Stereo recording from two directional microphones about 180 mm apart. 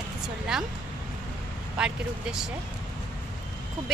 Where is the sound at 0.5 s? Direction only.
Centre (ahead or behind).